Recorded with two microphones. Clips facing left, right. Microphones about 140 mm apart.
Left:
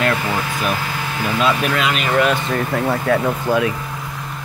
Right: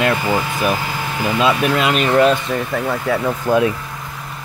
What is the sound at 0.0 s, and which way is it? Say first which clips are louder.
Speech: right 2 dB; 25° right (ahead or behind).